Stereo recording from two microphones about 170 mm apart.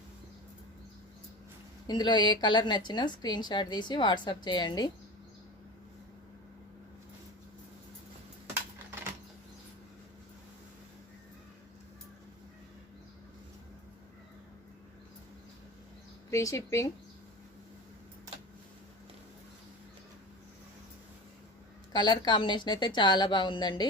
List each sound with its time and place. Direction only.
1.9 s a woman's voice: 25° left (ahead or behind)
16.3 s speech: 20° left (ahead or behind)
21.9 s a woman's voice: 25° left (ahead or behind)